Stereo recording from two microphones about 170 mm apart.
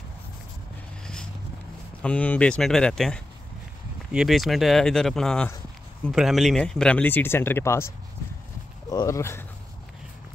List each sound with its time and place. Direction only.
2.0 s speech: 5° left (ahead or behind)
8.9 s speech: 20° left (ahead or behind)